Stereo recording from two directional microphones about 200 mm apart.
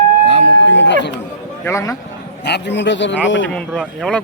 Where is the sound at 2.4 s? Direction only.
60° left (ahead or behind).